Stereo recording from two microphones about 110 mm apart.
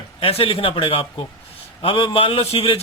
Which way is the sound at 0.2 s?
60° left (ahead or behind).